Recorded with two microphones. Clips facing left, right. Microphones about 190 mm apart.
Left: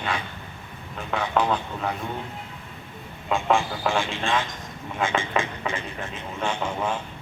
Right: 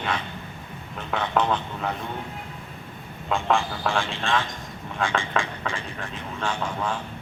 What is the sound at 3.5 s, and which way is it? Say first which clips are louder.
Speech: left 1 dB; 15° left (ahead or behind).